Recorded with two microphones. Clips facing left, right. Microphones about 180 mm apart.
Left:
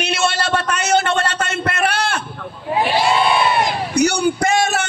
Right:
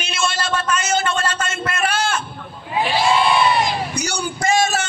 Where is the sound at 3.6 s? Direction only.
60° left (ahead or behind).